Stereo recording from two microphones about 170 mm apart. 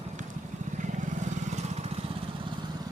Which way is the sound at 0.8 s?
45° right (ahead or behind).